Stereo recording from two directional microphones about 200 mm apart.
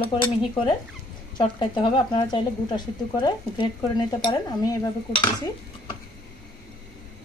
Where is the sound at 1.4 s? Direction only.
25° left (ahead or behind).